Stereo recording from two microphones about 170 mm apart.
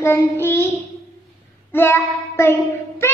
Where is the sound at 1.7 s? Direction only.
15° left (ahead or behind).